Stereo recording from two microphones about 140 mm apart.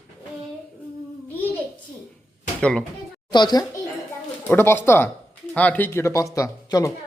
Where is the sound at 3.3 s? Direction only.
30° left (ahead or behind).